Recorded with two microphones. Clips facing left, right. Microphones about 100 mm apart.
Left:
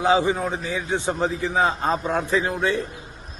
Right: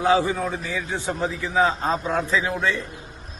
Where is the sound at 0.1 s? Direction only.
20° left (ahead or behind).